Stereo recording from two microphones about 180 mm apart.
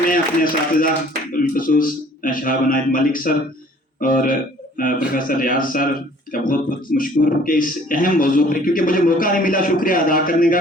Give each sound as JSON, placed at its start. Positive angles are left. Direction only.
{"t": 0.1, "sound": "speech", "side_deg": 50}